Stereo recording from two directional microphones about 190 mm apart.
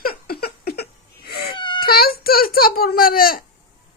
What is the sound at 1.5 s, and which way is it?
Baby cry, 25° left (ahead or behind).